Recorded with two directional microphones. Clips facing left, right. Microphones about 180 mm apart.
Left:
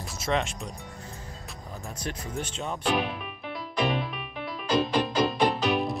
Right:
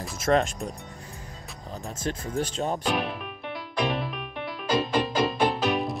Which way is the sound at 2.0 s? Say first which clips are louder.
Right 6 dB; 35° right (ahead or behind).